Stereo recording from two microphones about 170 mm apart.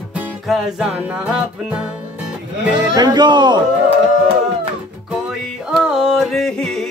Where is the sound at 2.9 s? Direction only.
25° right (ahead or behind).